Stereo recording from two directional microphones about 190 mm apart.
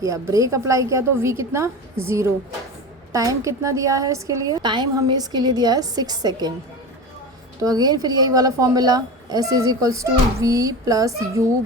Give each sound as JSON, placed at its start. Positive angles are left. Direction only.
{"t": 0.0, "sound": "a woman's voice", "side_deg": -15}
{"t": 7.6, "sound": "a woman's voice", "side_deg": -20}